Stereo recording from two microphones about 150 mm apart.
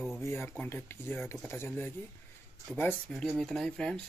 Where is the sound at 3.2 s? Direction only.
Centre (ahead or behind).